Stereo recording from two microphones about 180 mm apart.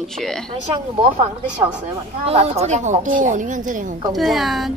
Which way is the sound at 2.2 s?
35° right (ahead or behind).